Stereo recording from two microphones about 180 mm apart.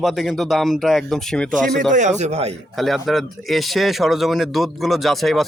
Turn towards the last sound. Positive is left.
turn(degrees=0)  # may be behind; listen again after turning